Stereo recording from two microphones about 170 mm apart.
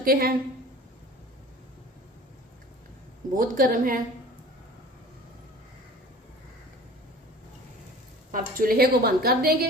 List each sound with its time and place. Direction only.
0.0 s a woman's voice: 60° right (ahead or behind)
3.3 s a woman's voice: 55° right (ahead or behind)
8.3 s a woman's voice: 55° right (ahead or behind)